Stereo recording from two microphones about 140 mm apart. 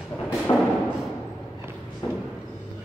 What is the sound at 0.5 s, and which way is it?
Music, 35° left (ahead or behind).